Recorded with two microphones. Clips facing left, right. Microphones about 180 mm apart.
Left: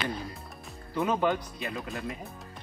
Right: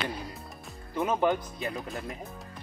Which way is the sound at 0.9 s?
20° right (ahead or behind).